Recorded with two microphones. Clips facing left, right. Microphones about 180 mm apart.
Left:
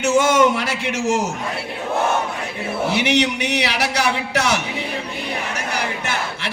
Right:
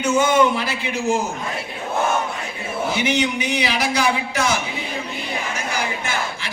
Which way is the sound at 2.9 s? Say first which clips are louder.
Left 2 dB; 70° left (ahead or behind).